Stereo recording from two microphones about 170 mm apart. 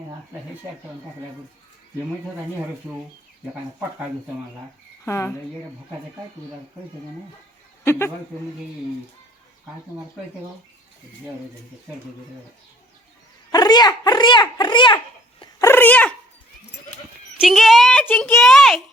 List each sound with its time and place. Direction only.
5.0 s speech: 15° left (ahead or behind)
7.9 s speech: 15° left (ahead or behind)
13.5 s a sound: 25° left (ahead or behind)
14.6 s dog: 25° left (ahead or behind)
15.7 s dog: 10° left (ahead or behind)
17.4 s a sound: centre (ahead or behind)